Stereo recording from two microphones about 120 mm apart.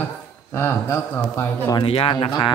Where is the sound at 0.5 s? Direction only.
20° left (ahead or behind).